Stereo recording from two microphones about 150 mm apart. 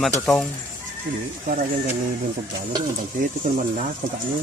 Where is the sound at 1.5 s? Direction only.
60° right (ahead or behind).